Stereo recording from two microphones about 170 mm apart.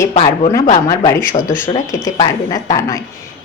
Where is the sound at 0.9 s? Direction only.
20° left (ahead or behind).